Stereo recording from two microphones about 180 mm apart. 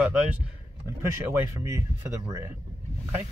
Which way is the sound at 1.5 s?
15° right (ahead or behind).